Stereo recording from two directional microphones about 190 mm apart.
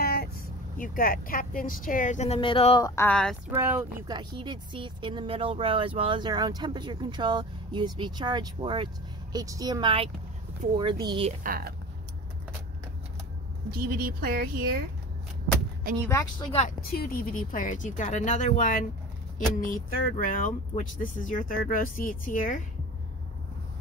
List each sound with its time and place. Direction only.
0.0 s vehicle: 55° left (ahead or behind)
0.7 s speech: 45° left (ahead or behind); by 2.9 s 25° left (ahead or behind)
3.0 s speech: 5° left (ahead or behind)
3.5 s speech: 10° right (ahead or behind)
4.1 s speech: 25° right (ahead or behind)
11.4 s speech: 50° right (ahead or behind)
13.7 s speech: 50° right (ahead or behind)
16.1 s speech: 15° left (ahead or behind)
16.9 s speech: 50° left (ahead or behind)